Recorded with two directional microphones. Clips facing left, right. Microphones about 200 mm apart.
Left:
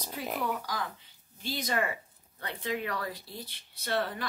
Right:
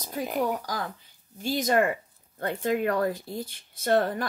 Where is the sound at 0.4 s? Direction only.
40° right (ahead or behind).